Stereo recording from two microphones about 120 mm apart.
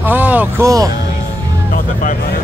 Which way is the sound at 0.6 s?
30° right (ahead or behind).